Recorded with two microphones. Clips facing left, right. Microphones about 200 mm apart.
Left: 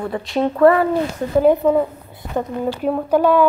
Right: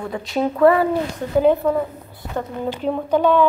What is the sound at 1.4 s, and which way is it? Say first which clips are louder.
A woman's voice: left 3 dB; 15° left (ahead or behind).